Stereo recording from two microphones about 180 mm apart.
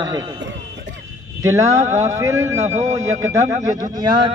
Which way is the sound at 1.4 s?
15° right (ahead or behind).